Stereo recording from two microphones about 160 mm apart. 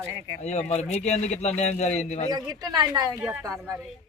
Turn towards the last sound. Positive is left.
turn(degrees=-20)  # may be behind; listen again after turning